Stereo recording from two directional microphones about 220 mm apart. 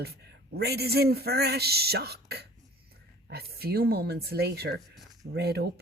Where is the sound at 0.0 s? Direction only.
45° right (ahead or behind).